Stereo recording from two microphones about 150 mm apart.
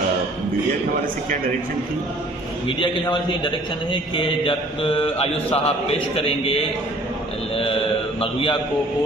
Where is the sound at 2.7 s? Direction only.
35° left (ahead or behind).